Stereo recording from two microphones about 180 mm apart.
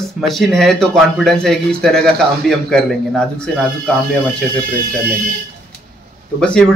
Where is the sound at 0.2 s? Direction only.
Centre (ahead or behind).